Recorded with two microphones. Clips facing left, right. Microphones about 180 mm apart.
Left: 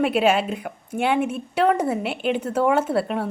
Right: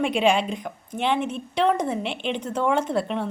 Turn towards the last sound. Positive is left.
turn(degrees=5)  # may be behind; listen again after turning